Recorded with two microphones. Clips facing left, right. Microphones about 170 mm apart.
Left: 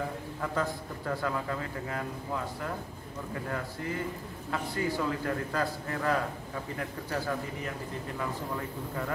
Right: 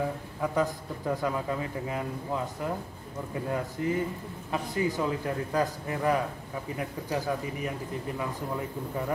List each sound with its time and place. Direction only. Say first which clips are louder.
0.4 s a man's voice: right 4 dB; 15° right (ahead or behind)